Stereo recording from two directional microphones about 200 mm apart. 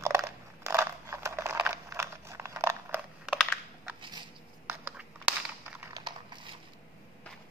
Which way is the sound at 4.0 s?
25° right (ahead or behind).